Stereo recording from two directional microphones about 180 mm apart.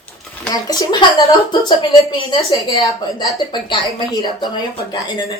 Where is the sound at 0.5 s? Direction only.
20° left (ahead or behind).